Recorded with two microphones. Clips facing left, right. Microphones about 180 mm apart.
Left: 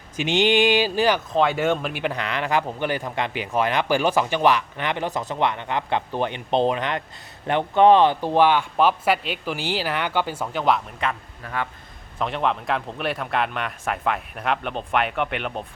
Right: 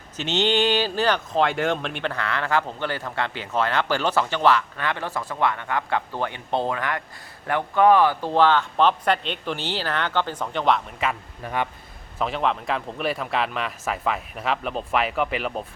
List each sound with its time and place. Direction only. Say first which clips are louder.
0.2 s speech: left 3 dB; 15° left (ahead or behind)
1.3 s speech: left 2 dB; centre (ahead or behind)
11.4 s a man's voice: right 2 dB; 20° right (ahead or behind)
12.2 s speech: even; centre (ahead or behind)